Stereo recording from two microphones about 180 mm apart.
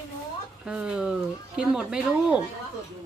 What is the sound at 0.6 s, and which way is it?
A man's voice, 5° right (ahead or behind).